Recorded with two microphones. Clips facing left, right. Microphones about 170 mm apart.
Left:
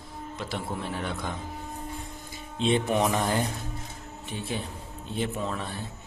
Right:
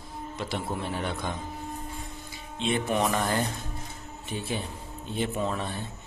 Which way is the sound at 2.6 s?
20° left (ahead or behind).